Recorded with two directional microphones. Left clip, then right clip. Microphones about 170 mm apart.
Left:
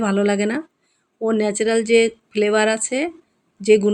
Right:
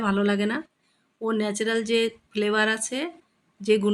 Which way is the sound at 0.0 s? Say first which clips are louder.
Left 5 dB; 10° left (ahead or behind).